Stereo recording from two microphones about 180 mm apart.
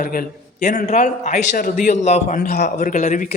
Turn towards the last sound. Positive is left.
turn(degrees=45)  # may be behind; listen again after turning